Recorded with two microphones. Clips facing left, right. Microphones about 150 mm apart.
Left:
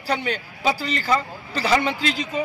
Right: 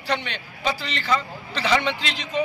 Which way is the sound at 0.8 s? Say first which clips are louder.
Left 5 dB; 45° left (ahead or behind).